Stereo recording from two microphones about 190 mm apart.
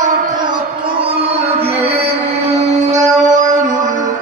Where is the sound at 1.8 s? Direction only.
30° right (ahead or behind).